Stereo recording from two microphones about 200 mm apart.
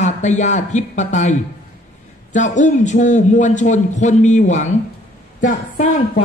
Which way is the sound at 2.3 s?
35° left (ahead or behind).